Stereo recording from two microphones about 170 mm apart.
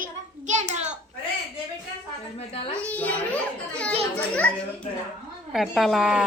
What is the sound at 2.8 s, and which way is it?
Speech, 10° left (ahead or behind).